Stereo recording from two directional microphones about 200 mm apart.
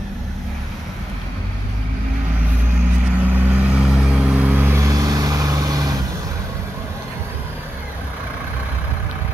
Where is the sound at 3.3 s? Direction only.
Centre (ahead or behind); by 5.9 s 20° right (ahead or behind).